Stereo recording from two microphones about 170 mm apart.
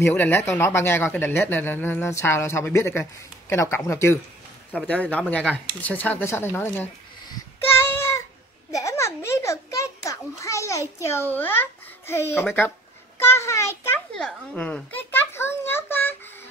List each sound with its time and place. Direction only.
0.0 s speech: 15° left (ahead or behind)
7.6 s a sound: 15° left (ahead or behind)
8.7 s children playing: 15° left (ahead or behind)
13.2 s a child's voice: 15° left (ahead or behind)